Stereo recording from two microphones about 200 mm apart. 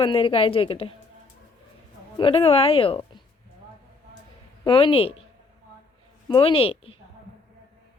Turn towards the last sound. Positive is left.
turn(degrees=30)  # may be behind; listen again after turning